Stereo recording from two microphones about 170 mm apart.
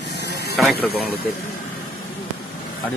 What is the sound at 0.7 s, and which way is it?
Speech, 65° left (ahead or behind).